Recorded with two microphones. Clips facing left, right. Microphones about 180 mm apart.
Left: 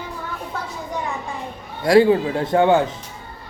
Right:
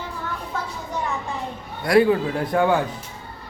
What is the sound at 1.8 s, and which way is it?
Speech, 25° left (ahead or behind).